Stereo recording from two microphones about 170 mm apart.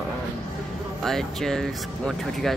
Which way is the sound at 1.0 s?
Centre (ahead or behind).